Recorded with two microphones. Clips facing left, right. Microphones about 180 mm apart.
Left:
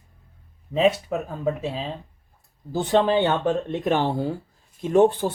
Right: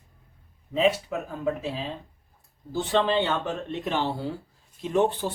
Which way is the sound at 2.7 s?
40° left (ahead or behind).